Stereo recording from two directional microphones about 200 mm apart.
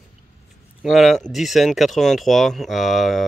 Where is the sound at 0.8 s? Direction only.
Centre (ahead or behind).